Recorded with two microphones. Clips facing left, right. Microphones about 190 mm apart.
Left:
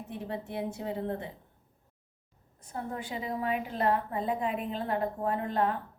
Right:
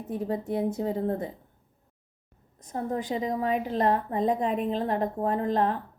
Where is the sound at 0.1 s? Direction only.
40° right (ahead or behind).